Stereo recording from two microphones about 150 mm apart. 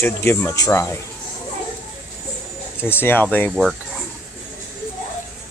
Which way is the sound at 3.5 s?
Centre (ahead or behind).